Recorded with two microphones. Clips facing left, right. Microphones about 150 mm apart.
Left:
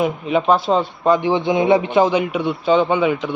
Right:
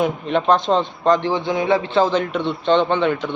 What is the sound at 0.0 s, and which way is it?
A man's voice, 5° left (ahead or behind).